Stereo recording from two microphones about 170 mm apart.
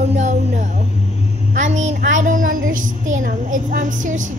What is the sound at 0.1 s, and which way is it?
A woman's voice, 45° right (ahead or behind).